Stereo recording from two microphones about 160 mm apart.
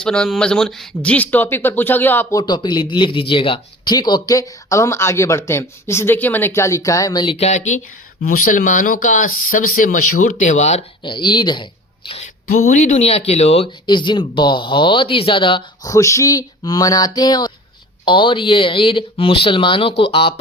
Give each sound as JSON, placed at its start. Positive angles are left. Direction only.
{"t": 0.0, "sound": "speech", "side_deg": 5}
{"t": 2.4, "sound": "a man's voice", "side_deg": 30}
{"t": 7.3, "sound": "speech", "side_deg": 45}
{"t": 11.0, "sound": "a woman's voice", "side_deg": 30}
{"t": 13.8, "sound": "a man's voice", "side_deg": 30}